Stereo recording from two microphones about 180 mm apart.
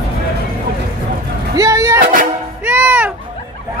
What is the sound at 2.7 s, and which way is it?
Music, 5° right (ahead or behind).